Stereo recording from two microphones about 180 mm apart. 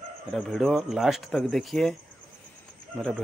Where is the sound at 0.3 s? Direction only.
Centre (ahead or behind).